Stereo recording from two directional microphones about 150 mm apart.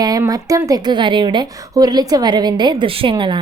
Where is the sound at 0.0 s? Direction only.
25° right (ahead or behind).